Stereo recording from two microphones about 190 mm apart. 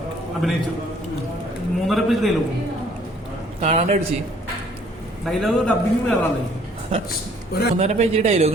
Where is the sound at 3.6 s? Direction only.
35° right (ahead or behind).